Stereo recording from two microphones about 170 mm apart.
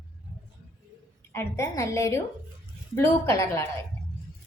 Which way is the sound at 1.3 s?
15° left (ahead or behind).